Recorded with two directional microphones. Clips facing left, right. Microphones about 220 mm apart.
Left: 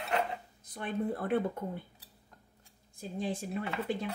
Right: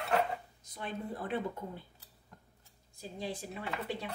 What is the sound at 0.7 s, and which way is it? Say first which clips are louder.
Speech: left 6 dB; 55° left (ahead or behind).